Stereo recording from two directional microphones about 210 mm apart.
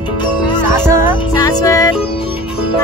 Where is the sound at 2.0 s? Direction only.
25° left (ahead or behind).